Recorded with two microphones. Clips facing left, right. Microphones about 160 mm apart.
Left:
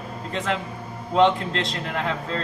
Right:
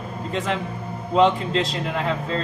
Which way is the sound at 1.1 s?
5° right (ahead or behind).